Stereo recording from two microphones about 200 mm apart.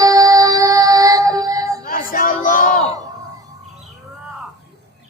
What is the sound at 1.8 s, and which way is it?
Chatter, 45° left (ahead or behind).